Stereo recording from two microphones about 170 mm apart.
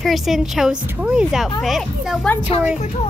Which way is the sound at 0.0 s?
Centre (ahead or behind).